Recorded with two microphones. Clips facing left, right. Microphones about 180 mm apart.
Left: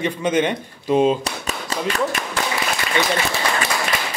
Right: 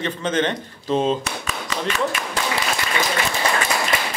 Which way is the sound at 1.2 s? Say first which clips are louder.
Left 1 dB; 40° left (ahead or behind).